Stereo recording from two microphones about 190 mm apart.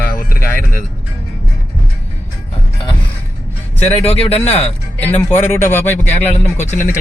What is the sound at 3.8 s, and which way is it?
Speech, 30° left (ahead or behind).